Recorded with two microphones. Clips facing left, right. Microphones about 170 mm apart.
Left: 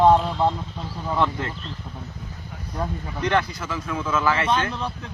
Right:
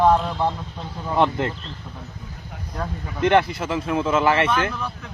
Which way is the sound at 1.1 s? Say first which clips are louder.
Right 4 dB; 25° right (ahead or behind).